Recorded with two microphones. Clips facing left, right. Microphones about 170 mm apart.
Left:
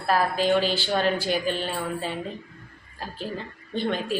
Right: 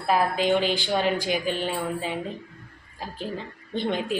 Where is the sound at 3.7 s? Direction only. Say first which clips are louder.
Even; 20° right (ahead or behind).